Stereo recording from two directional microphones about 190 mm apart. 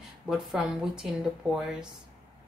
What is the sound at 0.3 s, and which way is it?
A woman's voice, 5° right (ahead or behind).